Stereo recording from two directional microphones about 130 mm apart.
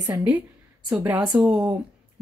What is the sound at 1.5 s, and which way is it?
Speech, 25° right (ahead or behind).